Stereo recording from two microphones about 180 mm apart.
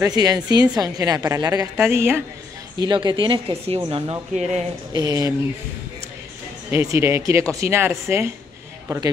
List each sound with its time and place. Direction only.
0.0 s a woman's voice: 20° right (ahead or behind)
2.8 s a woman's voice: 25° right (ahead or behind)
4.9 s a woman's voice: 20° right (ahead or behind)
6.7 s speech: 15° right (ahead or behind)